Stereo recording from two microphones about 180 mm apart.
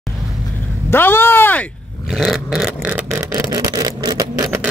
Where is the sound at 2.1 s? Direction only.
5° right (ahead or behind).